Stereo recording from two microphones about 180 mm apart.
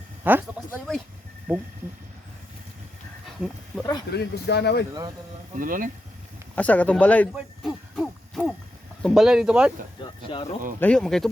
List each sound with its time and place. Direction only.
0.3 s speech: 10° right (ahead or behind)
3.2 s goat: centre (ahead or behind)
4.1 s speech: 65° left (ahead or behind)
5.5 s speech: 50° right (ahead or behind)
6.6 s speech: 10° left (ahead or behind)
7.3 s hoot: 5° right (ahead or behind)
9.0 s speech: centre (ahead or behind)
10.0 s a sound: 30° left (ahead or behind)
10.8 s speech: 5° left (ahead or behind)